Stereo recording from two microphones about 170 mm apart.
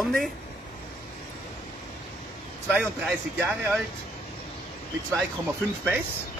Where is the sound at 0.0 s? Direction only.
Centre (ahead or behind).